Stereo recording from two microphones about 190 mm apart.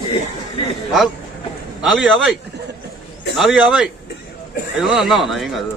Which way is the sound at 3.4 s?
Centre (ahead or behind).